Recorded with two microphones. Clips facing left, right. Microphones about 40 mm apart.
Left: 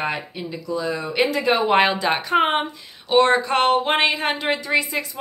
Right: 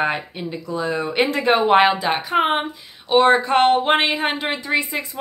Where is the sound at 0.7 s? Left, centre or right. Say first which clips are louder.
Right 2 dB; right.